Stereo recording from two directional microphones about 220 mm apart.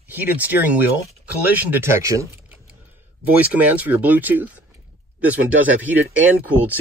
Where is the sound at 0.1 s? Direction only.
10° right (ahead or behind).